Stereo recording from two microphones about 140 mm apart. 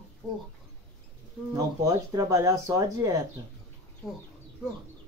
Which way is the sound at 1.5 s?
25° right (ahead or behind).